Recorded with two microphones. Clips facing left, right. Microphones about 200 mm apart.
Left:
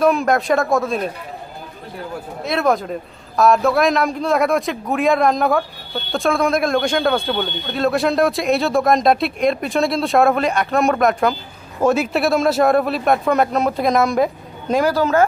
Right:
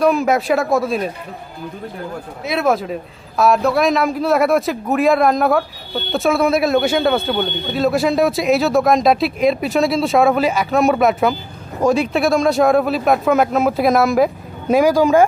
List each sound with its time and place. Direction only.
0.0 s a man's voice: centre (ahead or behind)
2.4 s a man's voice: 5° right (ahead or behind)